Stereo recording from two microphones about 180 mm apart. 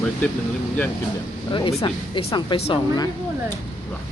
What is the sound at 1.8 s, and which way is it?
Speech, 25° left (ahead or behind).